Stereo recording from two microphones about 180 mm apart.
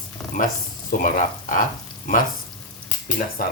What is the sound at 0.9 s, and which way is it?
Speech, 50° left (ahead or behind).